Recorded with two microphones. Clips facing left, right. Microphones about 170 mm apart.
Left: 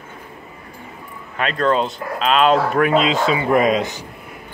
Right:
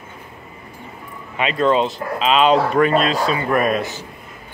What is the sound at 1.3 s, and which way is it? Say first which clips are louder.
Speech: right 1 dB; 5° right (ahead or behind).